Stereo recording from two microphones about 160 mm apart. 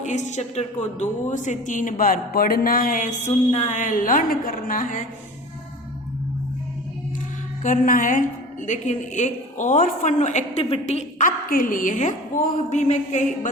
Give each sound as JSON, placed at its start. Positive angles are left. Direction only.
{"t": 0.0, "sound": "a woman's voice", "side_deg": 45}
{"t": 7.6, "sound": "a woman's voice", "side_deg": 55}
{"t": 11.3, "sound": "a woman's voice", "side_deg": 60}